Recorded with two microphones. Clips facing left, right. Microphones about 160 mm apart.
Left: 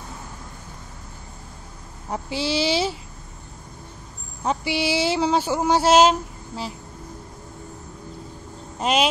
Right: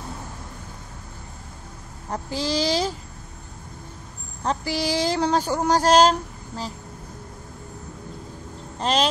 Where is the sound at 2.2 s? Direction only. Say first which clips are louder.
Left 1 dB; 40° right (ahead or behind).